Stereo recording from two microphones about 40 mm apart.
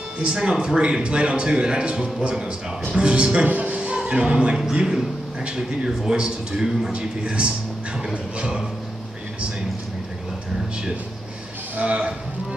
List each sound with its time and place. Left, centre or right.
0.2 s a man's voice: centre
3.4 s music: right
3.9 s a man's voice: right
11.8 s speech: right